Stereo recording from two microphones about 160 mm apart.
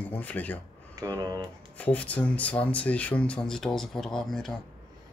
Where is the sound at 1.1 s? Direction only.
25° right (ahead or behind).